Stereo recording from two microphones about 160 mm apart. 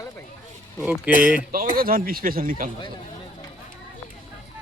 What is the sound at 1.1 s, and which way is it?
Speech, 55° left (ahead or behind).